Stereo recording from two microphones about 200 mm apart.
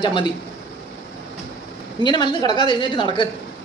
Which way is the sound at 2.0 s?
20° left (ahead or behind).